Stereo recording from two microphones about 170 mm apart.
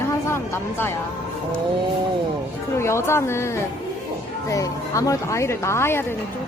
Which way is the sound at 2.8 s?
15° left (ahead or behind).